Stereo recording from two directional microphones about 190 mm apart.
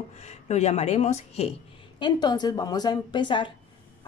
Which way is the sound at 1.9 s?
20° left (ahead or behind).